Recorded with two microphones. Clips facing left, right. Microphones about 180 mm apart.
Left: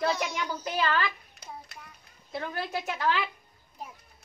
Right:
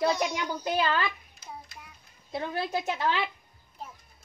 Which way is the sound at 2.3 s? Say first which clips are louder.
Right 2 dB; 30° right (ahead or behind).